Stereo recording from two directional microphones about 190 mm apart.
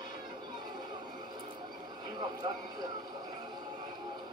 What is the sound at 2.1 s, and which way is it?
Speech, 20° right (ahead or behind).